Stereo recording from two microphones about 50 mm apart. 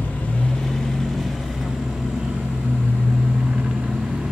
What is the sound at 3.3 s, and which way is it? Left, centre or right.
Vehicle, centre.